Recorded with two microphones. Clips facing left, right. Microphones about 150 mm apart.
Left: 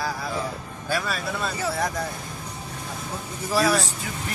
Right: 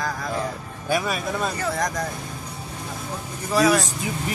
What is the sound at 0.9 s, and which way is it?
Music, 15° right (ahead or behind).